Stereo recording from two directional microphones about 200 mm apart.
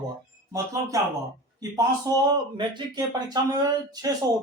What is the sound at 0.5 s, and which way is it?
Speech, 15° right (ahead or behind).